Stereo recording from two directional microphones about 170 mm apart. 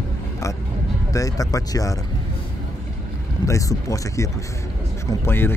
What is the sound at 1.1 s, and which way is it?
Speech, 20° left (ahead or behind).